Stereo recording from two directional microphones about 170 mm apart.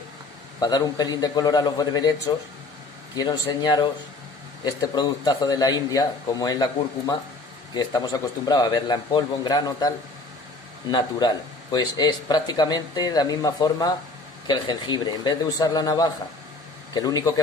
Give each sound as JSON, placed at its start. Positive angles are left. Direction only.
{"t": 0.6, "sound": "speech", "side_deg": 25}